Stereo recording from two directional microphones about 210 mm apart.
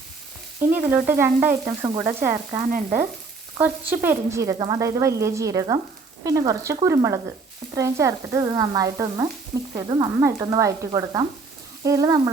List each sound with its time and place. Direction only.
0.7 s speech: 10° right (ahead or behind)
2.7 s frying: 40° right (ahead or behind)
3.6 s speech: 10° right (ahead or behind)